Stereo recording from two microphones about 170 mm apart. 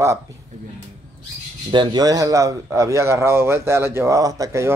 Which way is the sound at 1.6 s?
25° right (ahead or behind).